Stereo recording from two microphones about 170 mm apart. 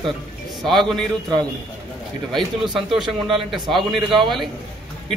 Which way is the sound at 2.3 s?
Centre (ahead or behind).